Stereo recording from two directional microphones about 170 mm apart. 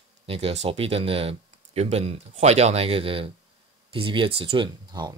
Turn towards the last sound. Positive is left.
turn(degrees=-25)  # may be behind; listen again after turning